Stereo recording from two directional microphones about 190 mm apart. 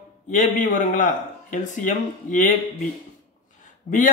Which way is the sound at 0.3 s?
40° left (ahead or behind).